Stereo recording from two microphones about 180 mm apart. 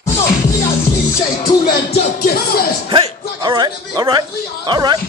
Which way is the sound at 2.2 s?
55° left (ahead or behind).